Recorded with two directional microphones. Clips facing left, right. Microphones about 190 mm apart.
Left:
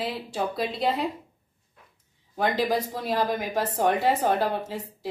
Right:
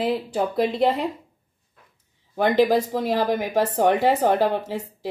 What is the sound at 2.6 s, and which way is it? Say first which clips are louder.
Speech: right 7 dB; 55° right (ahead or behind).